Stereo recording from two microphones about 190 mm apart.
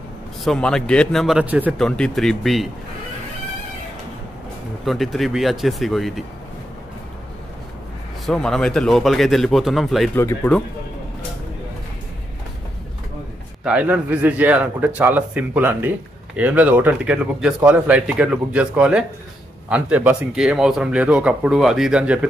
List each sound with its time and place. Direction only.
0.4 s speech: 5° left (ahead or behind)
1.8 s speech: 5° left (ahead or behind)
4.8 s speech: centre (ahead or behind)
8.3 s speech: 5° left (ahead or behind)
10.1 s speech: 10° left (ahead or behind)
13.7 s speech: 10° right (ahead or behind)